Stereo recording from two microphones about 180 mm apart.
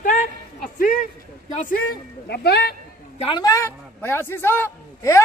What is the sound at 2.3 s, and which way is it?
Speech, 65° left (ahead or behind).